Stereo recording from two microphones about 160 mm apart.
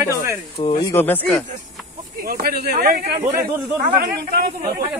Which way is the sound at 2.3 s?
70° right (ahead or behind).